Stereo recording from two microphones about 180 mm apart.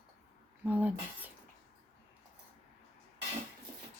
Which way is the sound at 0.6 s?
10° right (ahead or behind).